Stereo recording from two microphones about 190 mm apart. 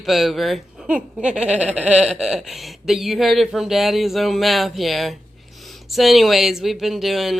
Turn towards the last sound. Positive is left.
turn(degrees=0)  # may be behind; listen again after turning